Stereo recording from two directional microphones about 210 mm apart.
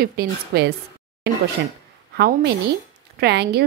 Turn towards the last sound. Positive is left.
turn(degrees=-50)  # may be behind; listen again after turning